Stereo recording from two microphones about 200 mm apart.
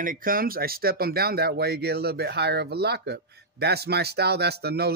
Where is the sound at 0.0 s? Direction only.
45° right (ahead or behind).